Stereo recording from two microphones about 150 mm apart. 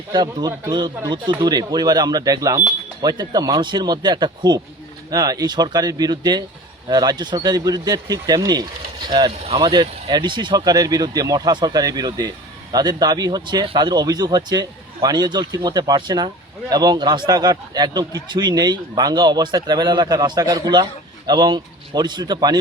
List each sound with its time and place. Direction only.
0.1 s speech: 30° right (ahead or behind)